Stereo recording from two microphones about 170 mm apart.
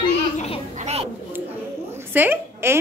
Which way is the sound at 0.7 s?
40° right (ahead or behind).